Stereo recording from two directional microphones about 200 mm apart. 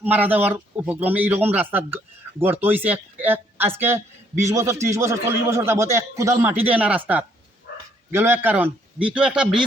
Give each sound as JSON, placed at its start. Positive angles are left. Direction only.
{"t": 0.0, "sound": "speech", "side_deg": -10}
{"t": 7.7, "sound": "bow-wow", "side_deg": 50}
{"t": 8.1, "sound": "speech", "side_deg": -10}